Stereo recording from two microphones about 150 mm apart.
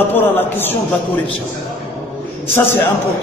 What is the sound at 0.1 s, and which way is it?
Speech, 15° left (ahead or behind).